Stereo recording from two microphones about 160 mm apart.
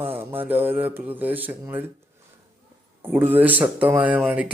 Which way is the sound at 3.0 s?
10° right (ahead or behind).